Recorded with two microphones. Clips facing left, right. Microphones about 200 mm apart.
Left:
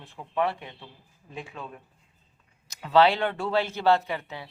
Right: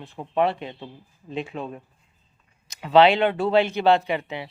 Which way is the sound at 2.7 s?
20° right (ahead or behind).